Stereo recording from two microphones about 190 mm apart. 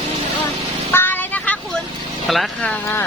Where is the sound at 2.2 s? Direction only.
Centre (ahead or behind).